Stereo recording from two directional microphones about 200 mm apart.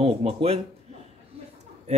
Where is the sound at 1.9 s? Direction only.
35° right (ahead or behind).